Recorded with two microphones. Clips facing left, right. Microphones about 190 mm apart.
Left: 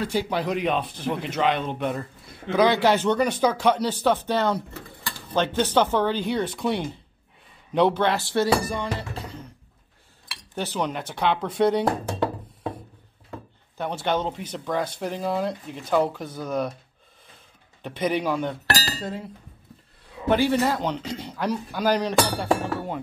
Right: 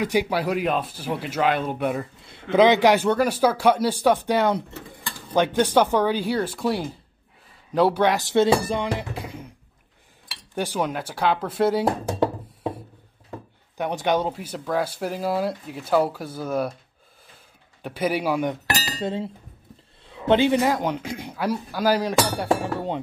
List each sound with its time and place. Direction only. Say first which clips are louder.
0.0 s speech: right 3 dB; 15° right (ahead or behind)
2.2 s speech: right 4 dB; 25° right (ahead or behind)
8.9 s music: right 3 dB; 15° right (ahead or behind)
10.5 s speech: right 2 dB; 10° right (ahead or behind)
13.7 s speech: right 3 dB; 15° right (ahead or behind)
17.8 s speech: right 1 dB; 5° right (ahead or behind)
19.0 s speech: right 5 dB; 25° right (ahead or behind)